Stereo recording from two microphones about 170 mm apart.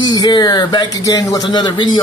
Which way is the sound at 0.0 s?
25° left (ahead or behind).